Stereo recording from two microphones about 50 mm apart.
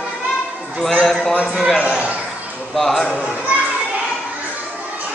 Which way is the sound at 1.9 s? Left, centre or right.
Right.